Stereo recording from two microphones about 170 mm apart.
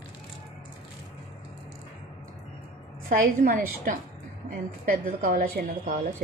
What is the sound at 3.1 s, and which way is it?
A woman's voice, 55° right (ahead or behind).